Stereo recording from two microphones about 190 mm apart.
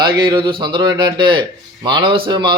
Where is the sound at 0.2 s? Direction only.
25° right (ahead or behind).